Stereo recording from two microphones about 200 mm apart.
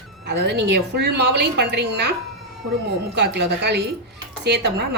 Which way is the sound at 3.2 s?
55° right (ahead or behind).